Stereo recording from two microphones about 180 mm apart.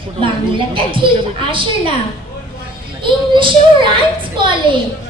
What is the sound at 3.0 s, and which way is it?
A child's voice, 25° right (ahead or behind).